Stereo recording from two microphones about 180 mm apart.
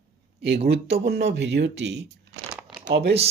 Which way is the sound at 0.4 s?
65° right (ahead or behind).